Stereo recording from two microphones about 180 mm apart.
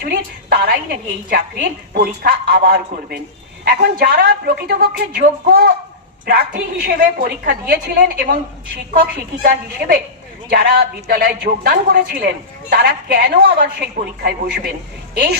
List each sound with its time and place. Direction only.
0.0 s a woman's voice: 60° right (ahead or behind)